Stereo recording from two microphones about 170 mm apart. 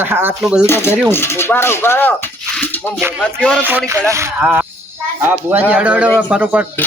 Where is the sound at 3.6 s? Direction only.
10° right (ahead or behind).